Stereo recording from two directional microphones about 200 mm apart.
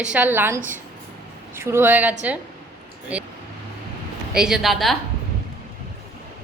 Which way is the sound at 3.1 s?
5° right (ahead or behind).